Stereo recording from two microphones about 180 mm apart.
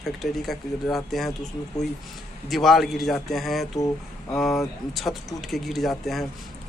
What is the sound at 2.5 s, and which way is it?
Speech, centre (ahead or behind).